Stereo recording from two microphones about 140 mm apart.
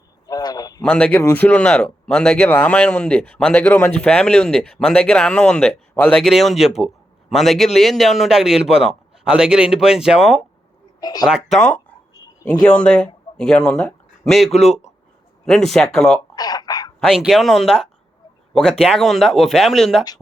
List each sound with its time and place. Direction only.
0.3 s a sound: 25° left (ahead or behind)
0.8 s a man's voice: 10° left (ahead or behind)
11.0 s speech: 30° left (ahead or behind)
11.3 s a man's voice: 5° right (ahead or behind)
16.3 s a sound: 30° left (ahead or behind)
17.1 s a man's voice: 5° right (ahead or behind)